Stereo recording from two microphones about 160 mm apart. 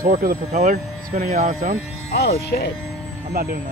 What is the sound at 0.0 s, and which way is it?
Speech, 65° right (ahead or behind).